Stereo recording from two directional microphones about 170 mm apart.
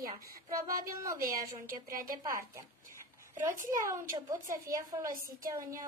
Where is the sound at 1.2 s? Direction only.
55° right (ahead or behind).